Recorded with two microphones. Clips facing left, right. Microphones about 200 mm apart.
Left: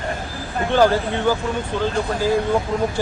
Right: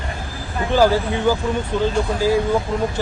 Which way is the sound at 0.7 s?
10° right (ahead or behind).